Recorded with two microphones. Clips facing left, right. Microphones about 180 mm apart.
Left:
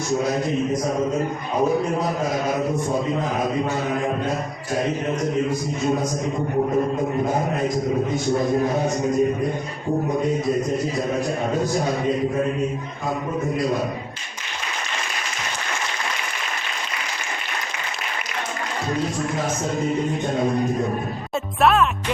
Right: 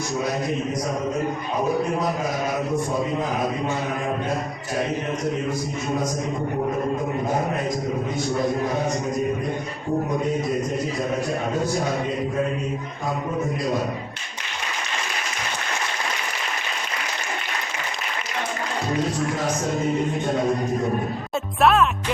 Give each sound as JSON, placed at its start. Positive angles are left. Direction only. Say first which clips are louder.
{"t": 21.6, "sound": "speech", "louder": "even", "side_deg": 0}